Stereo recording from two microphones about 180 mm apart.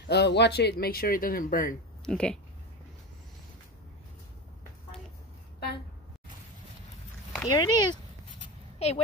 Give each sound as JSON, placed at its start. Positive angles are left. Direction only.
{"t": 0.0, "sound": "speech", "side_deg": 70}
{"t": 2.0, "sound": "speech", "side_deg": 5}
{"t": 7.4, "sound": "speech", "side_deg": 25}
{"t": 8.7, "sound": "a sound", "side_deg": 35}